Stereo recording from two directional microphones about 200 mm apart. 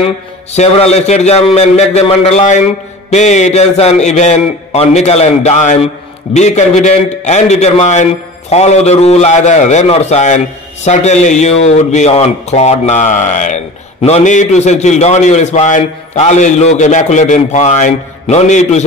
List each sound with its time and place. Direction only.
0.0 s a man's voice: 30° left (ahead or behind)